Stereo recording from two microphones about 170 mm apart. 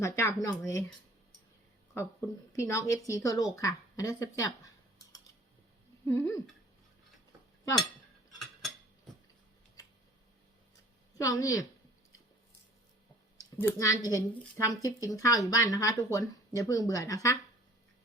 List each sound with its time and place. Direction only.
0.0 s speech: 20° left (ahead or behind)
2.5 s speech: 20° left (ahead or behind)
6.1 s speech: 15° left (ahead or behind)
11.2 s speech: 20° left (ahead or behind)
13.6 s speech: 20° left (ahead or behind)